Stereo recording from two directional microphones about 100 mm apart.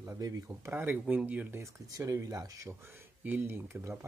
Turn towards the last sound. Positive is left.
turn(degrees=-25)  # may be behind; listen again after turning